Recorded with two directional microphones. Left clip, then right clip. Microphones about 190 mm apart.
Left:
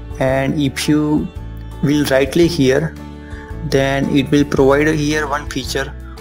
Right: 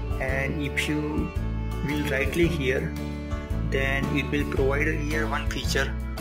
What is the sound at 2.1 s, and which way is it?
Speech, 40° left (ahead or behind).